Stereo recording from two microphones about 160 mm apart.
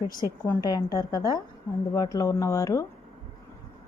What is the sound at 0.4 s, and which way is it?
Speech, 25° left (ahead or behind).